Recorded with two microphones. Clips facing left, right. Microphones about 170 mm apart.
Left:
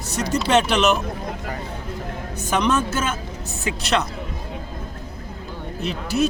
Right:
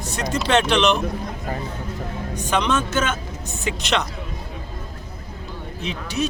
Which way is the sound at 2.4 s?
5° left (ahead or behind).